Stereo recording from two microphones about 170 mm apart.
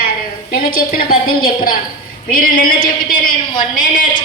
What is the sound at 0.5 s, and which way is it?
A man's voice, 55° left (ahead or behind).